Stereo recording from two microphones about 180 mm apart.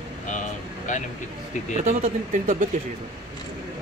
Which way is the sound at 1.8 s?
40° right (ahead or behind).